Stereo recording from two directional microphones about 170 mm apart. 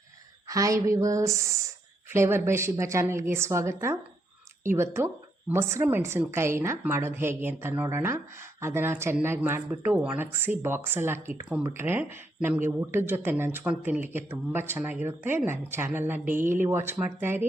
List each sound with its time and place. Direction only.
0.4 s speech: 20° right (ahead or behind)